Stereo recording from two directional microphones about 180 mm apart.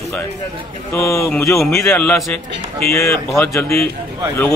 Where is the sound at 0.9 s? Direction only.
15° left (ahead or behind).